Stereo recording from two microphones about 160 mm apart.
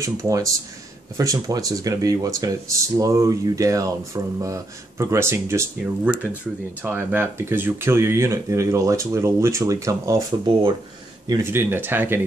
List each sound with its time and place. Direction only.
0.0 s speech: 20° right (ahead or behind)
6.8 s speech: 15° right (ahead or behind)